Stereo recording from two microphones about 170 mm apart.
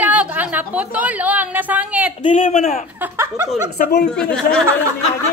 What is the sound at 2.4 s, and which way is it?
Speech, 50° left (ahead or behind).